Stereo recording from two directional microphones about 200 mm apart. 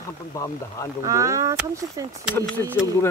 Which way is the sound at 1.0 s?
15° right (ahead or behind).